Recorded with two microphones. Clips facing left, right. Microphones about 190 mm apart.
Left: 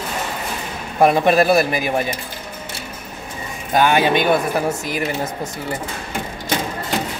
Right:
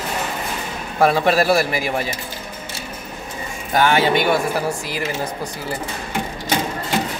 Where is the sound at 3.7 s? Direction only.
20° left (ahead or behind).